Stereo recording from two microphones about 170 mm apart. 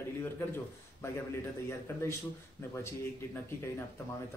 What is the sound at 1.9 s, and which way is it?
Speech, 15° left (ahead or behind).